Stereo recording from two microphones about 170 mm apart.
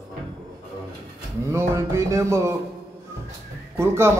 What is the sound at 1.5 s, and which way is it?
Speech, 15° right (ahead or behind).